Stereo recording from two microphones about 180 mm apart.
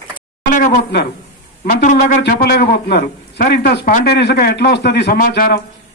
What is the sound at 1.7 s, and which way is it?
Speech, 45° left (ahead or behind).